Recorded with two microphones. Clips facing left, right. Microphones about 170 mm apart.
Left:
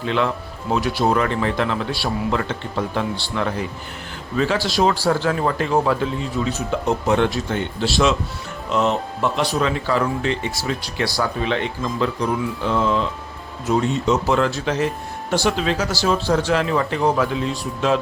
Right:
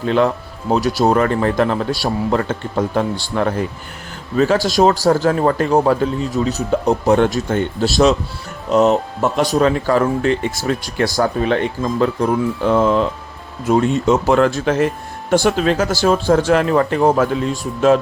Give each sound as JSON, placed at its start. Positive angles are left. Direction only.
{"t": 0.0, "sound": "speech", "side_deg": -40}